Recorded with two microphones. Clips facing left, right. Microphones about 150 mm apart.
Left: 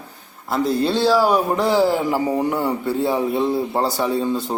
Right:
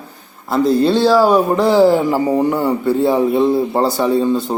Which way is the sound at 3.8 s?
10° left (ahead or behind).